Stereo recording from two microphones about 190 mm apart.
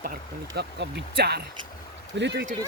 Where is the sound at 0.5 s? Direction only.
60° right (ahead or behind).